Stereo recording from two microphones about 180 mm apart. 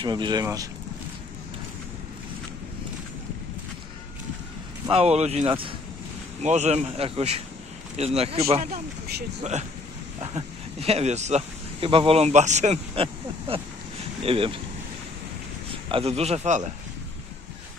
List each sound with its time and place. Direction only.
0.0 s speech: 25° right (ahead or behind)
4.8 s speech: 35° right (ahead or behind)
6.4 s speech: 40° right (ahead or behind)
15.7 s a man's voice: 30° right (ahead or behind)